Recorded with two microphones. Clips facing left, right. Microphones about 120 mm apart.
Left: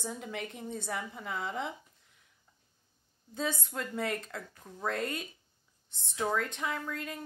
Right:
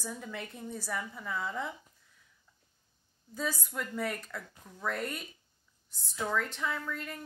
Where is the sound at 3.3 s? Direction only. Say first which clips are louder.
Left 1 dB; 25° left (ahead or behind).